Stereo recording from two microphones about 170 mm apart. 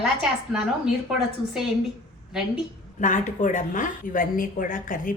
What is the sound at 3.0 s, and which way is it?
A woman's voice, 45° left (ahead or behind).